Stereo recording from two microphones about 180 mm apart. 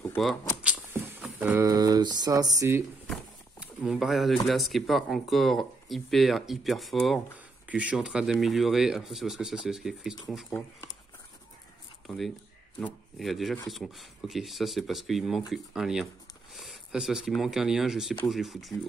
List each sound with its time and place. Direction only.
0.0 s vehicle: 5° left (ahead or behind)
0.8 s speech: 10° right (ahead or behind)
3.1 s speech: 5° right (ahead or behind)
12.8 s speech: centre (ahead or behind)